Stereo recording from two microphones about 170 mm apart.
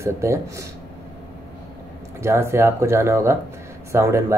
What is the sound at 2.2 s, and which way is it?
Speech, 15° right (ahead or behind).